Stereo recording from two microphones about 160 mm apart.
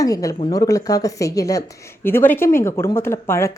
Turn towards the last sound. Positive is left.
turn(degrees=15)  # may be behind; listen again after turning